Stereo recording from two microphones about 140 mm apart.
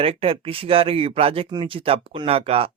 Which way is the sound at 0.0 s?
40° right (ahead or behind).